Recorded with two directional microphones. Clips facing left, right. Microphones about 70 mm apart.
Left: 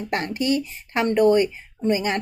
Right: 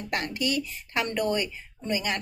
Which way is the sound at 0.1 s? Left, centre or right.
Left.